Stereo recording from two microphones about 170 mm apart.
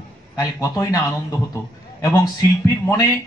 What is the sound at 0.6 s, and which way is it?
Speech, 20° left (ahead or behind).